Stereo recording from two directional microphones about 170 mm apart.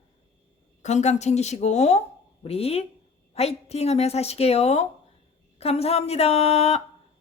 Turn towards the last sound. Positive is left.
turn(degrees=35)  # may be behind; listen again after turning